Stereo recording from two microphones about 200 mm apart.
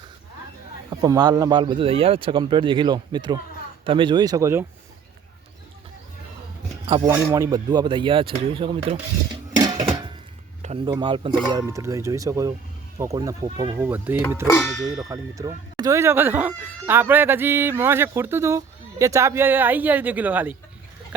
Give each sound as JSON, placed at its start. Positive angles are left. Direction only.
{"t": 0.9, "sound": "speech", "side_deg": -20}
{"t": 6.8, "sound": "speech", "side_deg": -20}
{"t": 9.6, "sound": "a sound", "side_deg": -20}
{"t": 10.6, "sound": "speech", "side_deg": -30}
{"t": 13.8, "sound": "speech", "side_deg": -10}